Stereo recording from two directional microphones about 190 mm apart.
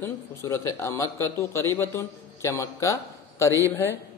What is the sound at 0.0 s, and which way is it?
Mantra, 15° left (ahead or behind).